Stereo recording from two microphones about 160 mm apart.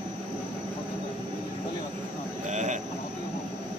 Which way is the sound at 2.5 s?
50° right (ahead or behind).